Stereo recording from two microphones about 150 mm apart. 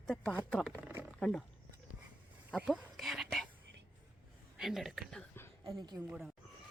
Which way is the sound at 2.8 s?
Centre (ahead or behind).